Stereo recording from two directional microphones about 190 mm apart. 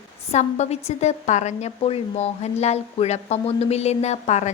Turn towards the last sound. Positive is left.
turn(degrees=35)  # may be behind; listen again after turning